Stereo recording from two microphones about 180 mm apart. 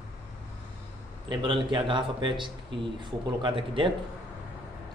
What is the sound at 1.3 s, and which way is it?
A man's voice, 25° right (ahead or behind).